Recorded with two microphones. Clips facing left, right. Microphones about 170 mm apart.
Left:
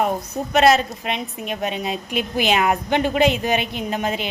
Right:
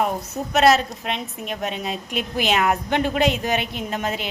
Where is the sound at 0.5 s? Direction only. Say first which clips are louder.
Left 1 dB; centre (ahead or behind).